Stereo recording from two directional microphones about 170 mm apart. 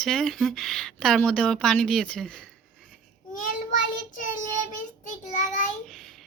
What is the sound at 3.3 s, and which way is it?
Child singing, 50° left (ahead or behind).